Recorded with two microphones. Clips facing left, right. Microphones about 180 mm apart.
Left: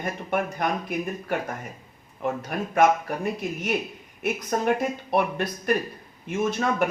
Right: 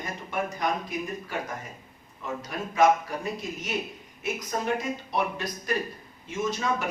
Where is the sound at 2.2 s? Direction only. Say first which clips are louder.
Left 7 dB; 55° left (ahead or behind).